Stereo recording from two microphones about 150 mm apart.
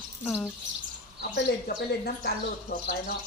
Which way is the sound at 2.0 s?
90° left.